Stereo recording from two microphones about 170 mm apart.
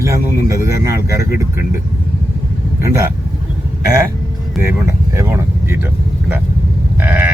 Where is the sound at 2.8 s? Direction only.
15° right (ahead or behind).